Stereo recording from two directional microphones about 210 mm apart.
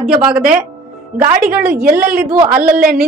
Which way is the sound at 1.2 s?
45° right (ahead or behind).